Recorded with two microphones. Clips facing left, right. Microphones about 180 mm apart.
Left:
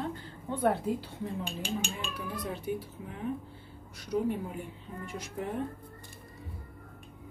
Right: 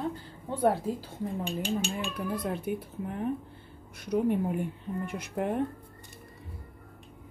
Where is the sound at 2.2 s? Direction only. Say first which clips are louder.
Right 5 dB; 55° right (ahead or behind).